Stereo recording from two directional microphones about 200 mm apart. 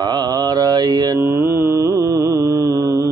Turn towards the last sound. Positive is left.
turn(degrees=-15)  # may be behind; listen again after turning